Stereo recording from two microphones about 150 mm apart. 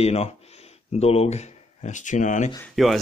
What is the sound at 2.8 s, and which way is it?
Speech, centre (ahead or behind).